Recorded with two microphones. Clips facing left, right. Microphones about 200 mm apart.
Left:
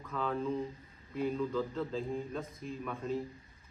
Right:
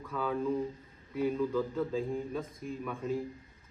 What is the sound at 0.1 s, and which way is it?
A man's voice, 5° right (ahead or behind).